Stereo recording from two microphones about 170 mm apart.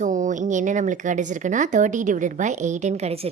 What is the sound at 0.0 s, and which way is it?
A woman's voice, 45° right (ahead or behind).